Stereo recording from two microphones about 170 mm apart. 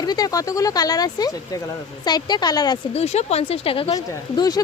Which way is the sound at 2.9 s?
40° left (ahead or behind).